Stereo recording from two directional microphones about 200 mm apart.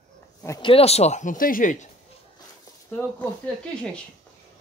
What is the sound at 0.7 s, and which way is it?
Speech, 30° left (ahead or behind).